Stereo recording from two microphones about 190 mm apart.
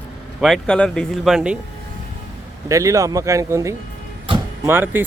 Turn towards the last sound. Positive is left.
turn(degrees=-10)  # may be behind; listen again after turning